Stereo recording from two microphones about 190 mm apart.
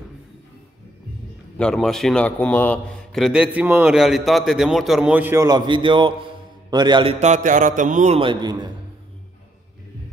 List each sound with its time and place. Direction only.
1.6 s a man's voice: 5° left (ahead or behind); by 8.6 s 25° right (ahead or behind)